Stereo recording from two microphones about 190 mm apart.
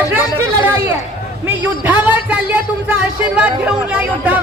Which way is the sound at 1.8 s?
10° right (ahead or behind).